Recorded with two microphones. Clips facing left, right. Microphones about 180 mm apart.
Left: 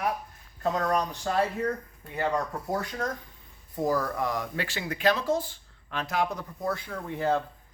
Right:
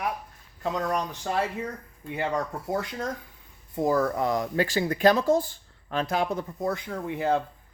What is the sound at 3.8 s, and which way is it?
Speech, 25° right (ahead or behind).